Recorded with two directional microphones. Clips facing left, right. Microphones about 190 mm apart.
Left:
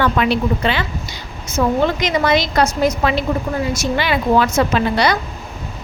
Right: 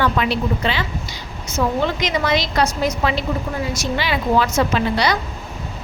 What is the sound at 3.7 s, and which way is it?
A woman's voice, 55° left (ahead or behind).